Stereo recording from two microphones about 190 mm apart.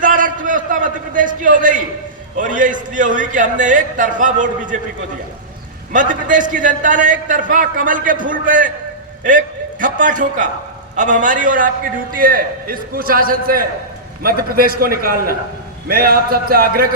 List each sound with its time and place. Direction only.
0.0 s a sound: 45° right (ahead or behind)
2.3 s a man's voice: 45° right (ahead or behind)
5.9 s a man's voice: 45° right (ahead or behind)
9.8 s a man's voice: 45° right (ahead or behind)